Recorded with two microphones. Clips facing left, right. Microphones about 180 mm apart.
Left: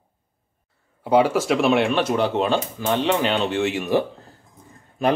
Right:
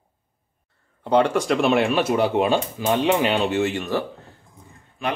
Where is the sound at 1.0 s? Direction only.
5° left (ahead or behind).